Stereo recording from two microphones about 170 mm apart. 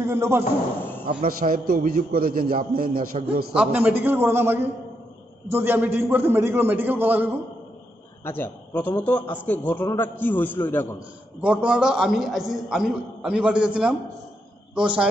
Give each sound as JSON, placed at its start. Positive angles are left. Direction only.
{"t": 0.0, "sound": "a man's voice", "side_deg": -15}
{"t": 1.2, "sound": "a man's voice", "side_deg": -55}
{"t": 3.5, "sound": "a man's voice", "side_deg": -10}
{"t": 8.2, "sound": "a man's voice", "side_deg": 15}
{"t": 11.4, "sound": "a man's voice", "side_deg": -5}